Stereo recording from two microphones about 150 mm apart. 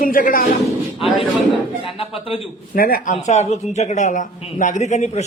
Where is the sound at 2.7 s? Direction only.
75° left (ahead or behind).